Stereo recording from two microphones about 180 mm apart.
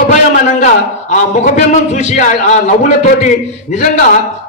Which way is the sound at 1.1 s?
40° left (ahead or behind).